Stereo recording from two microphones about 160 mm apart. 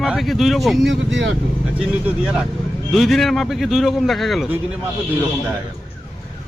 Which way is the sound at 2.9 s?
Centre (ahead or behind).